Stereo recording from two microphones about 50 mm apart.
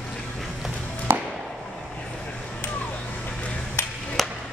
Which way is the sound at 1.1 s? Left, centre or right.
Right.